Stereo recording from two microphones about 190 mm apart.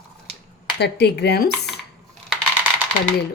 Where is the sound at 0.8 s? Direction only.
60° left (ahead or behind).